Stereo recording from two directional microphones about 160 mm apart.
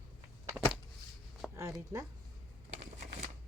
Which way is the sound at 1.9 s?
20° right (ahead or behind).